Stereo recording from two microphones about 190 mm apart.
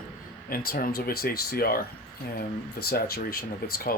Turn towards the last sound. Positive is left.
turn(degrees=50)  # may be behind; listen again after turning